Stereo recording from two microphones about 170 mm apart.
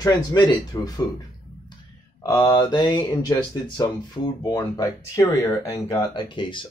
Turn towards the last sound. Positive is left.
turn(degrees=30)  # may be behind; listen again after turning